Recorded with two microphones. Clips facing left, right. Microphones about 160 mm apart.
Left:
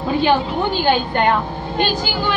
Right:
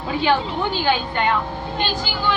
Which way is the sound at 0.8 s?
50° left (ahead or behind).